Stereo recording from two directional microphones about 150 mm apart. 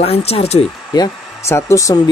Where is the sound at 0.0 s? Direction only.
40° left (ahead or behind).